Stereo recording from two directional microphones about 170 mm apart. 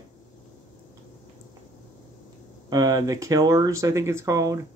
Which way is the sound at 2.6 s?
20° right (ahead or behind).